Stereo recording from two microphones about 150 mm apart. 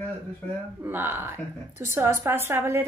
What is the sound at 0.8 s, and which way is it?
A woman's voice, 15° right (ahead or behind).